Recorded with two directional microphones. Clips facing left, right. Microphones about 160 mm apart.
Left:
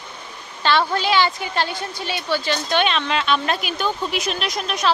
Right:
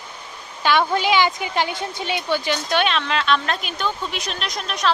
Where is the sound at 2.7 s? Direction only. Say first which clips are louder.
Left 1 dB; centre (ahead or behind).